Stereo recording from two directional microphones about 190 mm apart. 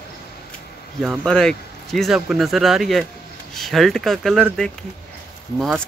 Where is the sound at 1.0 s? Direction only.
Centre (ahead or behind).